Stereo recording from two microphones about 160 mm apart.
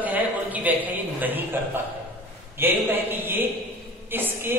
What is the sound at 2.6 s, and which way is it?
A man's voice, 15° right (ahead or behind).